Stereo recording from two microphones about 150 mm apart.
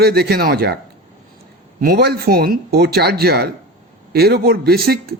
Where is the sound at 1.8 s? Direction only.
85° right.